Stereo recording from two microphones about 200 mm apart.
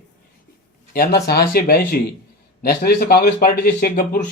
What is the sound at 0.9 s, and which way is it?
Speech, 55° left (ahead or behind).